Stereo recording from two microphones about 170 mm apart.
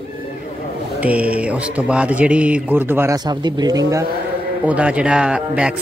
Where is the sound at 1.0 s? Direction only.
10° right (ahead or behind).